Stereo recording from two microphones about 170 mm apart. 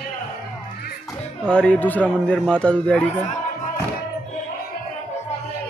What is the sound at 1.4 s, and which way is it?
A man's voice, 5° left (ahead or behind).